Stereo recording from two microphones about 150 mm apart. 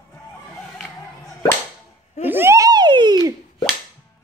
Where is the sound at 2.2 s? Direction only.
15° right (ahead or behind).